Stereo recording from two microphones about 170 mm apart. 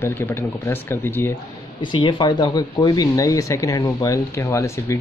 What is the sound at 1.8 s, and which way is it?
Speech, 30° left (ahead or behind).